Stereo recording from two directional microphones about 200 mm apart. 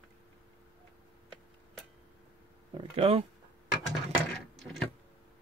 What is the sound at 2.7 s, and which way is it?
Speech, 30° right (ahead or behind).